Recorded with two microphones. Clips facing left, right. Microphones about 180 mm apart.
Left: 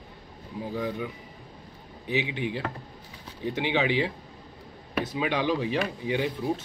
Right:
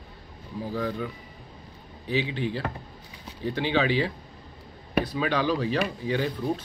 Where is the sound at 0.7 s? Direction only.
15° left (ahead or behind).